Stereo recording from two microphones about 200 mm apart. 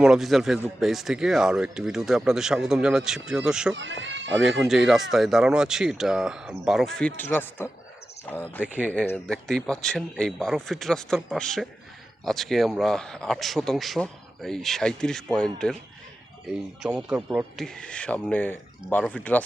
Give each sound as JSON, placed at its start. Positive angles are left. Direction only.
{"t": 0.0, "sound": "speech", "side_deg": 0}
{"t": 3.8, "sound": "speech", "side_deg": -65}
{"t": 4.4, "sound": "speech", "side_deg": 0}
{"t": 8.6, "sound": "speech", "side_deg": -5}
{"t": 8.9, "sound": "speech", "side_deg": 5}
{"t": 17.1, "sound": "speech", "side_deg": -5}